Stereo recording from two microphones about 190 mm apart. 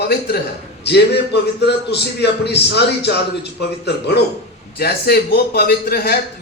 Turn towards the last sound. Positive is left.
turn(degrees=55)  # may be behind; listen again after turning